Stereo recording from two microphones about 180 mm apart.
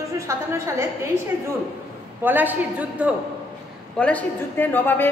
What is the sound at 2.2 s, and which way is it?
Speech, 10° right (ahead or behind).